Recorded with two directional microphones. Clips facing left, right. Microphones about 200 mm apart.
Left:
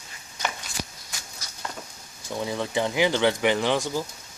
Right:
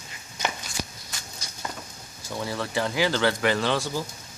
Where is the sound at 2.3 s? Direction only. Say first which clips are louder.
Left 2 dB; 15° left (ahead or behind).